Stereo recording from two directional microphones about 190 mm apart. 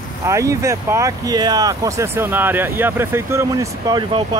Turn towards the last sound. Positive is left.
turn(degrees=-15)  # may be behind; listen again after turning